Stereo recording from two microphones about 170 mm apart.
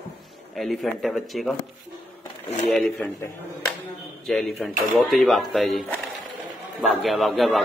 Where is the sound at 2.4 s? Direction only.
40° left (ahead or behind).